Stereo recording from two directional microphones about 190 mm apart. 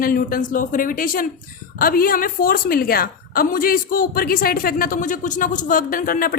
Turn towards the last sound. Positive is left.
turn(degrees=50)  # may be behind; listen again after turning